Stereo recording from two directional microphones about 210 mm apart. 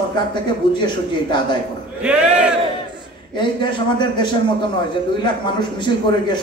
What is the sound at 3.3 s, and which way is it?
Speech, 20° left (ahead or behind).